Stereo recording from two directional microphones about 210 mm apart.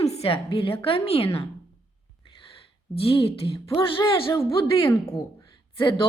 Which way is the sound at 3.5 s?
15° left (ahead or behind).